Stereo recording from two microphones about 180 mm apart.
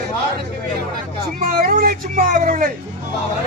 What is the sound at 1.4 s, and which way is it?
Speech, 50° right (ahead or behind).